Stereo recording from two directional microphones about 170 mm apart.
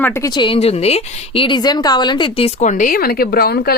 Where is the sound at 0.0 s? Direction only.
15° left (ahead or behind).